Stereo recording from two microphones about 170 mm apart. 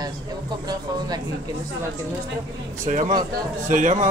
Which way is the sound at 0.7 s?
25° right (ahead or behind).